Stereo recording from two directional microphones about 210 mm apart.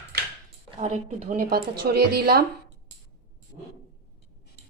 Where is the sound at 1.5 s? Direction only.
50° right (ahead or behind).